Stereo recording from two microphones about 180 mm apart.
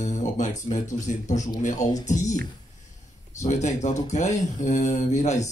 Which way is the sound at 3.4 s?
40° left (ahead or behind).